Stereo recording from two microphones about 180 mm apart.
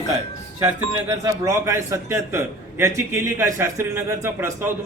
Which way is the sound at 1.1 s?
15° right (ahead or behind).